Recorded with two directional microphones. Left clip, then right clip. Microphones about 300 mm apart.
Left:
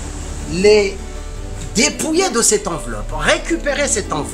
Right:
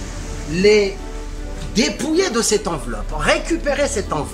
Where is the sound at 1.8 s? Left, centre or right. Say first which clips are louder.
Left 2 dB; centre.